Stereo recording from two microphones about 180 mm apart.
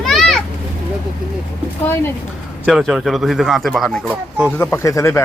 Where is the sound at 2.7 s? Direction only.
Centre (ahead or behind).